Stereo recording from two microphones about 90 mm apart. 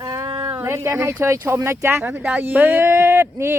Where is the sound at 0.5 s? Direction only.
30° right (ahead or behind).